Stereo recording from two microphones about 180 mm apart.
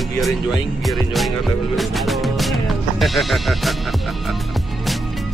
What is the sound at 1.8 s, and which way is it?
Music, centre (ahead or behind).